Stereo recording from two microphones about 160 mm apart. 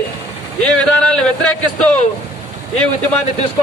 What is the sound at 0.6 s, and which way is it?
Speech, 5° left (ahead or behind).